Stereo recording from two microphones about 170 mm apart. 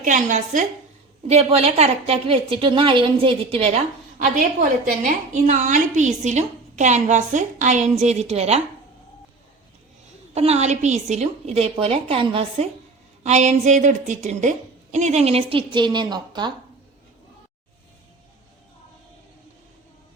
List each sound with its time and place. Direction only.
0.0 s a woman's voice: 45° right (ahead or behind)
4.2 s a woman's voice: 50° right (ahead or behind)
10.3 s a woman's voice: 40° right (ahead or behind)